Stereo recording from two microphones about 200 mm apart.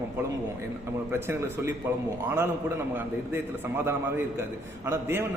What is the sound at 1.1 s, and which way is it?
Speech, 10° right (ahead or behind).